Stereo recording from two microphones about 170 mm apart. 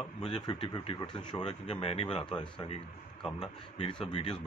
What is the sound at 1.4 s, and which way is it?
Speech, 40° left (ahead or behind).